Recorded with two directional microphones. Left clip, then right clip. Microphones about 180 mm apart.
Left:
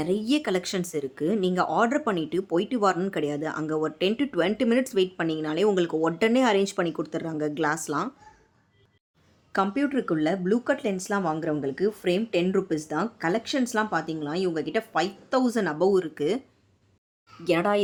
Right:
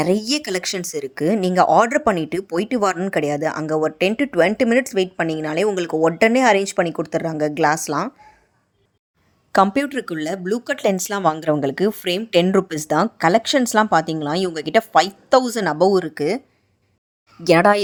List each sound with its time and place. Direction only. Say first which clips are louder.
0.0 s speech: right 6 dB; 40° right (ahead or behind)
9.5 s a woman's voice: right 9 dB; 50° right (ahead or behind); by 16.4 s 30° right (ahead or behind)
17.4 s a woman's voice: right 9 dB; 45° right (ahead or behind)